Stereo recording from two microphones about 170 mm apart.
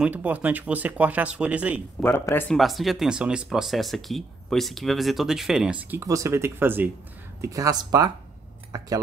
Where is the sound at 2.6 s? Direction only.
Centre (ahead or behind).